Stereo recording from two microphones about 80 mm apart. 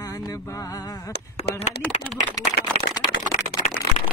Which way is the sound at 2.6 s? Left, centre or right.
Left.